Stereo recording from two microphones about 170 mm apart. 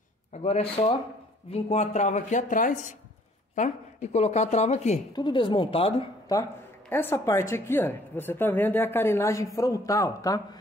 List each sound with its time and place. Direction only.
0.3 s speech: 35° left (ahead or behind)
5.1 s a woman's voice: 25° left (ahead or behind)
6.9 s a woman's voice: 15° left (ahead or behind)